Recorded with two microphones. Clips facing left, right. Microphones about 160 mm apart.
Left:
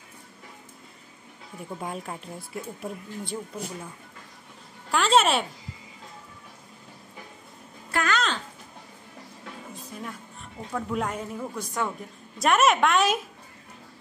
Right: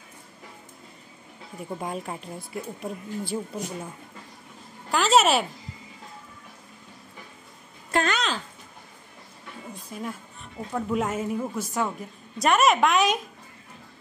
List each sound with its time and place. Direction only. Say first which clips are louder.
1.6 s speech: right 2 dB; centre (ahead or behind)
4.9 s speech: right 1 dB; centre (ahead or behind)
7.9 s a sound: right 2 dB; 25° right (ahead or behind)
9.9 s a woman's voice: right 5 dB; 5° right (ahead or behind)